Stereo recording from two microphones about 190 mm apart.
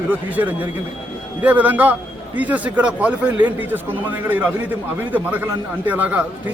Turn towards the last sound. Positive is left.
turn(degrees=-10)  # may be behind; listen again after turning